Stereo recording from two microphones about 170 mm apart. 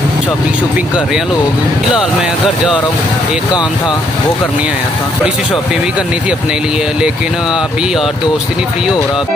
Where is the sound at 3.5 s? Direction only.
25° left (ahead or behind).